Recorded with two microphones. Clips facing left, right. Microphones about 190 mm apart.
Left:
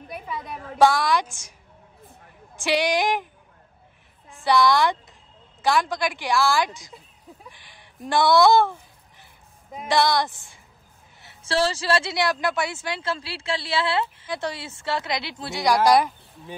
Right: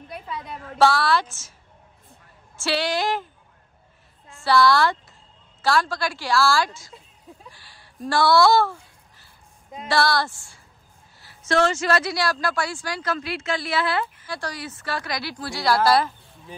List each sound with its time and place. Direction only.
0.1 s a woman's voice: 5° left (ahead or behind)
0.7 s a woman's voice: 15° left (ahead or behind)
2.5 s a woman's voice: 15° left (ahead or behind)
4.5 s a woman's voice: 20° left (ahead or behind)
7.4 s a sound: 20° left (ahead or behind)
9.8 s speech: 20° left (ahead or behind)